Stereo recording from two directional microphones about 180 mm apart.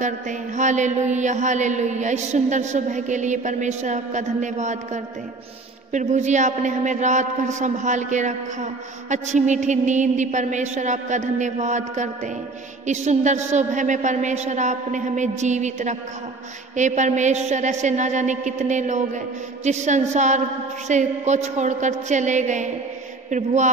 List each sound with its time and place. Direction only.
0.0 s mantra: 40° right (ahead or behind)